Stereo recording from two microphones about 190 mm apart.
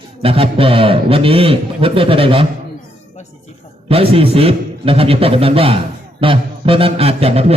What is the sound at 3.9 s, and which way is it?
A man's voice, 30° right (ahead or behind).